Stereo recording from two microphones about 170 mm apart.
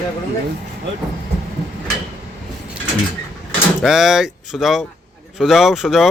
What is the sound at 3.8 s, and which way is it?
Speech, 5° right (ahead or behind).